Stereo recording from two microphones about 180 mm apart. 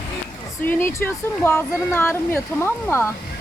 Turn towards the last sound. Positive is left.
turn(degrees=10)  # may be behind; listen again after turning